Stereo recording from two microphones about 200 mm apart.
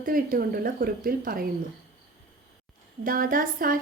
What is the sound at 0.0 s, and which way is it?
A woman's voice, 45° right (ahead or behind).